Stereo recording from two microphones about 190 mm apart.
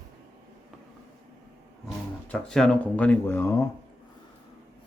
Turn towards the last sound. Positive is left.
turn(degrees=15)  # may be behind; listen again after turning